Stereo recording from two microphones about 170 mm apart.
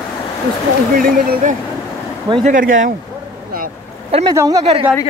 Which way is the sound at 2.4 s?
50° right (ahead or behind).